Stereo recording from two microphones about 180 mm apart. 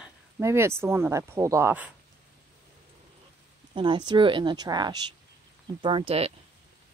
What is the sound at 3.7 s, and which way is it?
Speech, 25° right (ahead or behind).